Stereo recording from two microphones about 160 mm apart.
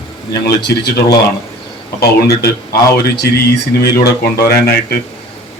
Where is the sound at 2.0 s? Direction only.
85° left.